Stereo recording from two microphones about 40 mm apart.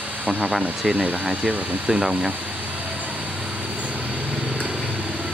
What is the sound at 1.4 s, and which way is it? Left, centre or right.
Speech, right.